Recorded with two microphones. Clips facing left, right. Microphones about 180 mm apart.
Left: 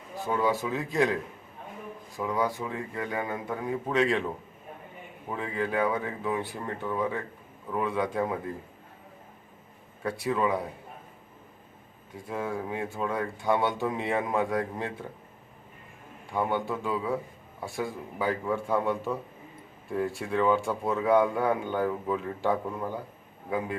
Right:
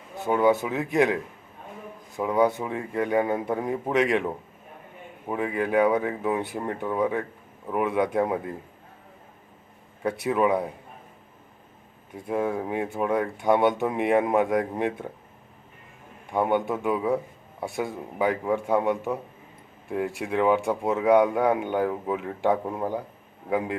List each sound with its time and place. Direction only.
0.3 s speech: 20° right (ahead or behind)
5.3 s speech: 15° right (ahead or behind)
10.0 s speech: 20° right (ahead or behind)
12.1 s speech: 20° right (ahead or behind)
16.3 s speech: 20° right (ahead or behind)